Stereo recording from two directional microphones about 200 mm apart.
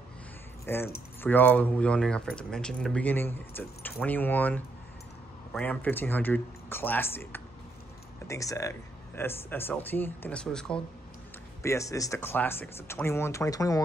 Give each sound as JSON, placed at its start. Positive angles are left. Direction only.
{"t": 0.7, "sound": "speech", "side_deg": 10}
{"t": 11.6, "sound": "speech", "side_deg": 15}